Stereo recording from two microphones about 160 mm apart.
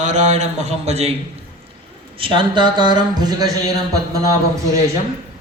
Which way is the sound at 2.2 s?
30° right (ahead or behind).